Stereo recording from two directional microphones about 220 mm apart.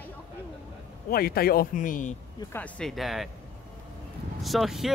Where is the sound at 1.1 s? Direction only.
45° left (ahead or behind).